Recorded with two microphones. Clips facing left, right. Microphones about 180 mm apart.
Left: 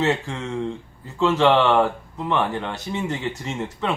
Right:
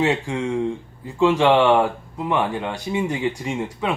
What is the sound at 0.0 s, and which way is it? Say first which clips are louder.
Speech: right 2 dB; 15° right (ahead or behind).